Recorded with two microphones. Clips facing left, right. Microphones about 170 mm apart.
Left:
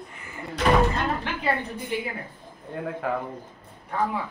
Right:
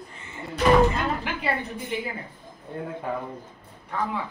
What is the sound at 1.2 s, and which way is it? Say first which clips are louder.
Speech: left 1 dB; 5° right (ahead or behind).